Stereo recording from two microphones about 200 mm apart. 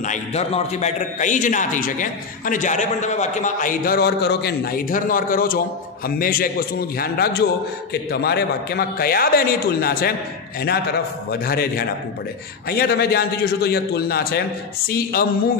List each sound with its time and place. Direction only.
0.0 s a man's voice: 35° left (ahead or behind)
11.4 s a man's voice: 50° left (ahead or behind)